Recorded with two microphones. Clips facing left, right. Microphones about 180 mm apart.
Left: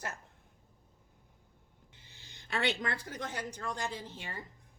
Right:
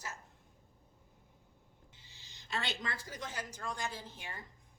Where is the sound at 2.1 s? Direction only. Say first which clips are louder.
Left 3 dB; 55° left (ahead or behind).